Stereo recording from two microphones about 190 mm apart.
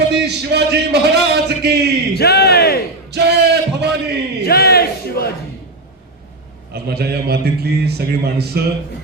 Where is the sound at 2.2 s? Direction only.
55° left (ahead or behind).